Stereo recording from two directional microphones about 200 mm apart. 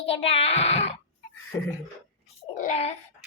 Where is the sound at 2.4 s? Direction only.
35° left (ahead or behind).